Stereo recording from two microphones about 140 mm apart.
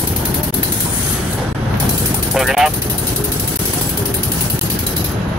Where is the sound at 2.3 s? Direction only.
Centre (ahead or behind).